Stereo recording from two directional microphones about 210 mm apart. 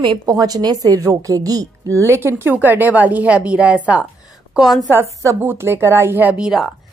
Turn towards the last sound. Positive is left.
turn(degrees=0)  # may be behind; listen again after turning